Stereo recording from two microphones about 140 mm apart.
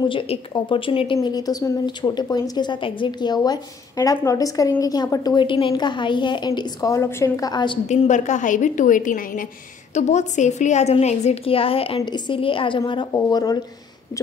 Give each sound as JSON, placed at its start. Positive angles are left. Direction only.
{"t": 0.0, "sound": "a woman's voice", "side_deg": 35}
{"t": 7.9, "sound": "a woman's voice", "side_deg": 60}
{"t": 9.9, "sound": "a woman's voice", "side_deg": 55}